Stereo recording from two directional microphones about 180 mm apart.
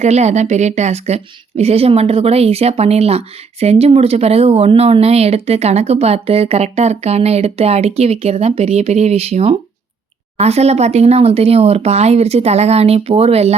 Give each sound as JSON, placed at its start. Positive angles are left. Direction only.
{"t": 0.0, "sound": "a woman's voice", "side_deg": -40}